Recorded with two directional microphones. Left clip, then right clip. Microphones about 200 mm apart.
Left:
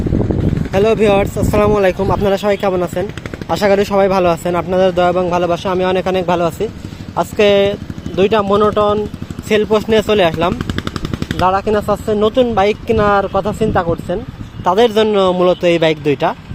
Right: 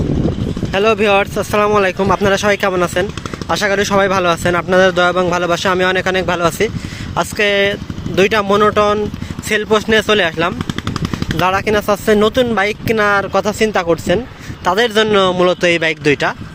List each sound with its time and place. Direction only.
0.7 s speech: centre (ahead or behind)
9.5 s speech: centre (ahead or behind)
10.8 s machine gun: 40° right (ahead or behind)
11.8 s speech: 15° right (ahead or behind)
14.6 s speech: centre (ahead or behind)